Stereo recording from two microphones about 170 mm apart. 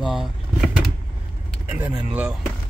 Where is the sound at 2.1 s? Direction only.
5° right (ahead or behind).